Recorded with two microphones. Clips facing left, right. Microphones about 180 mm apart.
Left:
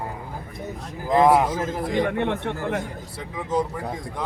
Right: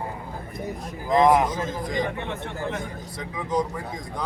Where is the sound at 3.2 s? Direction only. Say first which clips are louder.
Left 1 dB; 5° left (ahead or behind).